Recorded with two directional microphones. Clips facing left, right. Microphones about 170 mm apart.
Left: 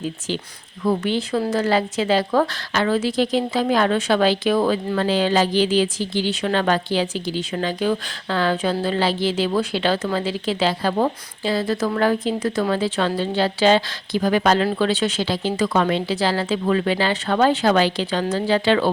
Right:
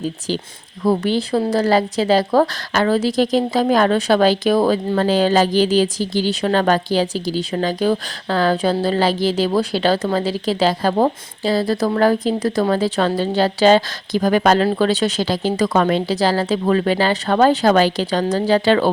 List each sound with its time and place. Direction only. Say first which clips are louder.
0.8 s speech: right 3 dB; 35° right (ahead or behind)